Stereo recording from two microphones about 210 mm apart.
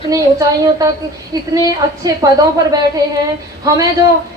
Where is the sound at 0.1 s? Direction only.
15° right (ahead or behind).